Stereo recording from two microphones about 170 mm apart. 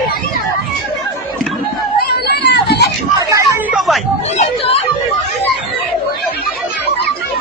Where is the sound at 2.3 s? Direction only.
75° left (ahead or behind).